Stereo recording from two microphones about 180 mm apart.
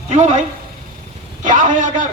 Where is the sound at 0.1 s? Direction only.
40° right (ahead or behind).